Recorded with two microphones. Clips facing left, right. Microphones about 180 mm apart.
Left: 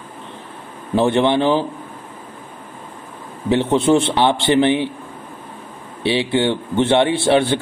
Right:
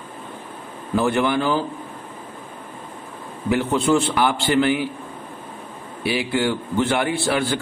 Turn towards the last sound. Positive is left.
turn(degrees=25)  # may be behind; listen again after turning